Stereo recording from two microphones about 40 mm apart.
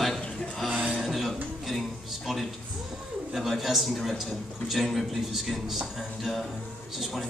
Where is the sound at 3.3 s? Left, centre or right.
Centre.